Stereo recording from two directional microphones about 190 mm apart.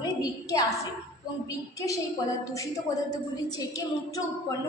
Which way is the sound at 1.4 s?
15° left (ahead or behind).